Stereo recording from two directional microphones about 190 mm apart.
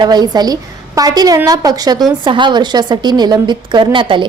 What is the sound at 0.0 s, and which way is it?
A woman's voice, 20° right (ahead or behind).